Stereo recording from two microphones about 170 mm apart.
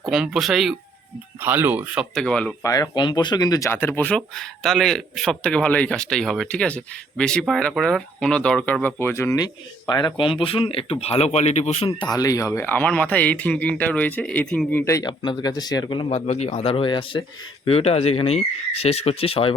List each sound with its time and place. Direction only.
0.0 s speech: centre (ahead or behind)
2.1 s speech: 5° left (ahead or behind)
2.6 s speech: 20° left (ahead or behind)
12.1 s speech: 20° left (ahead or behind)